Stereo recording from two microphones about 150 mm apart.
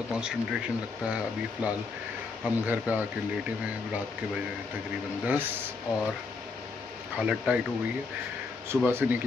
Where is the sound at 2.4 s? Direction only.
10° right (ahead or behind).